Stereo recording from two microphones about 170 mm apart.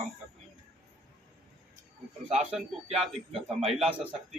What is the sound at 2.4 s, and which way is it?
Speech, 5° right (ahead or behind).